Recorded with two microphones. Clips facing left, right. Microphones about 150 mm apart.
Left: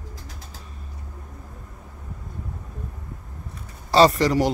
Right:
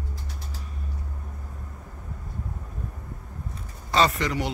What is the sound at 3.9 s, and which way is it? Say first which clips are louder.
Speech: left 7 dB; 35° left (ahead or behind).